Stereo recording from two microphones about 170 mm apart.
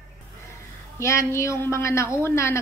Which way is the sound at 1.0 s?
15° left (ahead or behind).